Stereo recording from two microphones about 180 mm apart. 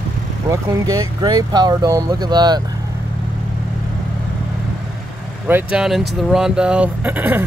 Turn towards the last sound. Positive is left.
turn(degrees=-10)  # may be behind; listen again after turning